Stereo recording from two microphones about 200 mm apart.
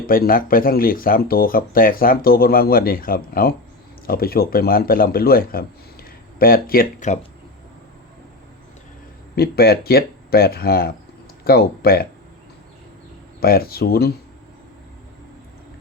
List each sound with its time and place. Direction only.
0.0 s speech: 45° left (ahead or behind)
9.3 s speech: 50° left (ahead or behind)
13.4 s speech: 50° left (ahead or behind)